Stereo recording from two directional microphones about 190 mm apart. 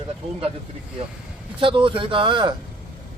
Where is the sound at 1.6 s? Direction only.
25° right (ahead or behind).